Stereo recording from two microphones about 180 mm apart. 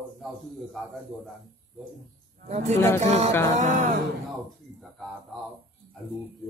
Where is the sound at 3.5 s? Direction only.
45° right (ahead or behind).